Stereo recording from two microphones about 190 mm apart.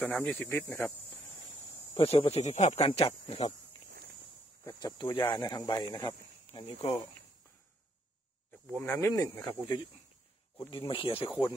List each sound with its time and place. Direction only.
0.0 s speech: 10° left (ahead or behind)
2.0 s speech: 30° left (ahead or behind)
4.6 s speech: 20° left (ahead or behind)
8.5 s speech: 10° left (ahead or behind); by 11.2 s 30° left (ahead or behind)